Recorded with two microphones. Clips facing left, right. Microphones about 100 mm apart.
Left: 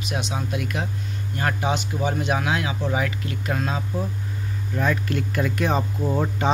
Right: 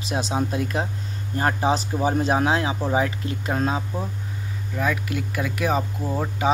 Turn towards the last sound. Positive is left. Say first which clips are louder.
# left 3 dB
turn(degrees=0)  # may be behind; listen again after turning